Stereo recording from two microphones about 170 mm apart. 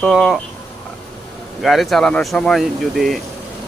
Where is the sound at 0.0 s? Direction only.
Centre (ahead or behind).